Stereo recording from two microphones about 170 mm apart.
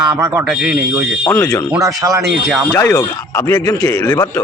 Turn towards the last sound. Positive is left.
turn(degrees=15)  # may be behind; listen again after turning